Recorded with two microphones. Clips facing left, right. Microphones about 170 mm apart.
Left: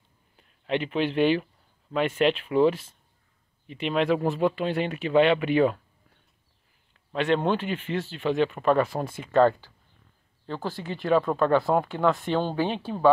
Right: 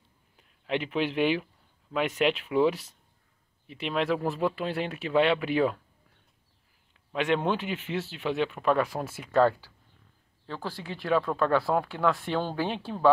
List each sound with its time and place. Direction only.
0.4 s speech: 5° right (ahead or behind)
7.1 s speech: 5° right (ahead or behind)